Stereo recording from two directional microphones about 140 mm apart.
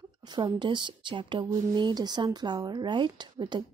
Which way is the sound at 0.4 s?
35° right (ahead or behind).